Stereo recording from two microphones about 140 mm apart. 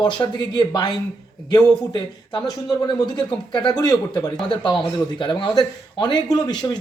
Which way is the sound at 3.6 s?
30° left (ahead or behind).